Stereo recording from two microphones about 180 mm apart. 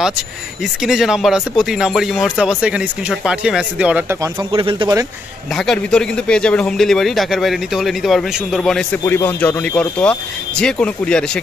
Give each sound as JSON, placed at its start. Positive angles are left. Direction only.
{"t": 0.8, "sound": "a man's voice", "side_deg": -5}
{"t": 4.5, "sound": "speech", "side_deg": -30}
{"t": 5.5, "sound": "a man's voice", "side_deg": 0}
{"t": 9.0, "sound": "speech", "side_deg": 10}